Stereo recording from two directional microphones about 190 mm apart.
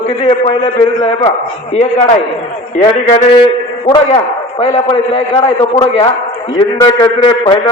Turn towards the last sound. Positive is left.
turn(degrees=25)  # may be behind; listen again after turning